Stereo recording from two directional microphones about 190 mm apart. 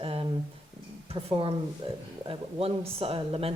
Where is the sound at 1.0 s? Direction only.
25° right (ahead or behind).